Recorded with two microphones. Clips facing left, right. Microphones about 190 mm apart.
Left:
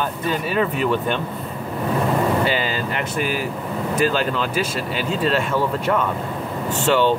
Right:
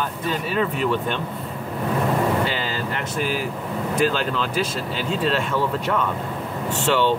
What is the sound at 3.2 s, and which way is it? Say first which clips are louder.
Speech: even; 55° left (ahead or behind).